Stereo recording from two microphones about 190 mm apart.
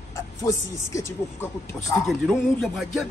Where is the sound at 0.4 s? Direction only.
15° left (ahead or behind).